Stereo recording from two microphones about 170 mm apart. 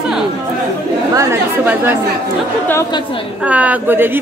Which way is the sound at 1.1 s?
15° right (ahead or behind).